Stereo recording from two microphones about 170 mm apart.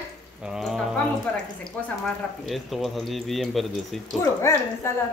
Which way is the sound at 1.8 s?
10° left (ahead or behind).